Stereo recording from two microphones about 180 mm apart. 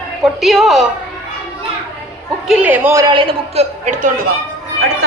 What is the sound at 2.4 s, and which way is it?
A man's voice, 5° right (ahead or behind).